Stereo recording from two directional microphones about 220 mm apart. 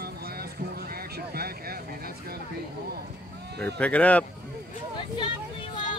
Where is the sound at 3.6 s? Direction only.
5° left (ahead or behind).